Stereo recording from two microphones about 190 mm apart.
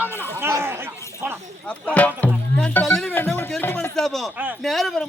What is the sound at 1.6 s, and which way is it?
Music, 5° left (ahead or behind).